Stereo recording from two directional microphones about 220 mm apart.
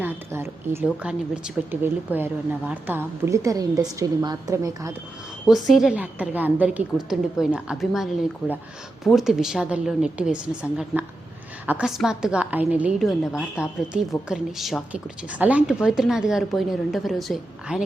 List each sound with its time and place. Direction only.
0.0 s a woman's voice: 10° right (ahead or behind)
5.5 s a woman's voice: centre (ahead or behind)